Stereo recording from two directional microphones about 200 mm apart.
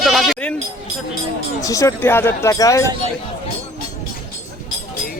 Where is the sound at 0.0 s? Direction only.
Centre (ahead or behind).